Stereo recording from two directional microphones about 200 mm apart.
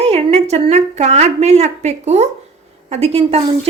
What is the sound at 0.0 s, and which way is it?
A woman's voice, 30° right (ahead or behind).